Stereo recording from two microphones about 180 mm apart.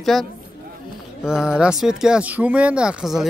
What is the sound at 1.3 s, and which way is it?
Speech, 5° right (ahead or behind).